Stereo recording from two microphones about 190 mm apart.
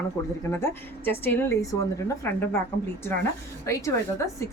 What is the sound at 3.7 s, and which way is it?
Speech, 15° left (ahead or behind).